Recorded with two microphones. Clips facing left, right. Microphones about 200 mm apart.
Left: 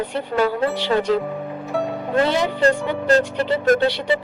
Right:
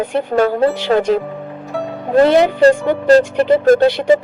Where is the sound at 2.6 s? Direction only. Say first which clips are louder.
Right 7 dB; 35° right (ahead or behind).